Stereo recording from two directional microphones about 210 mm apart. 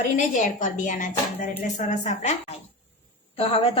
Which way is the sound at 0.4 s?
40° left (ahead or behind).